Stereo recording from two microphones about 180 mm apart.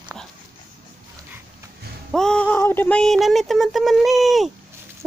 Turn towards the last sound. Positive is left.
turn(degrees=0)  # may be behind; listen again after turning